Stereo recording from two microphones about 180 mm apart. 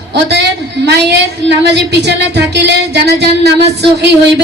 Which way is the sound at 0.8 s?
70° right (ahead or behind).